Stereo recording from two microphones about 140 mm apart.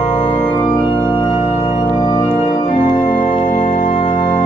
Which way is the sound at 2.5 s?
35° left (ahead or behind).